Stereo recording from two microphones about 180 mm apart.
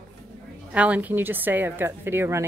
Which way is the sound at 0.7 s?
5° right (ahead or behind).